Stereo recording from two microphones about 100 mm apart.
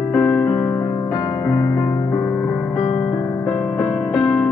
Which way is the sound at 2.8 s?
15° left (ahead or behind).